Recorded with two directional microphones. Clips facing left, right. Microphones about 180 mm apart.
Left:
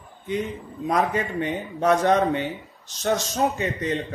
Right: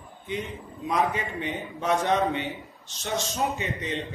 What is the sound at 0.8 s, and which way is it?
A man's voice, 45° left (ahead or behind).